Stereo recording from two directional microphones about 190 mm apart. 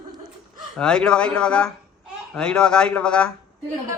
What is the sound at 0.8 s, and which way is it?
Speech, 5° left (ahead or behind).